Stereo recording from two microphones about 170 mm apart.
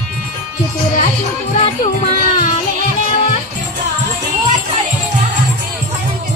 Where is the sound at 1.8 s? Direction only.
50° left (ahead or behind).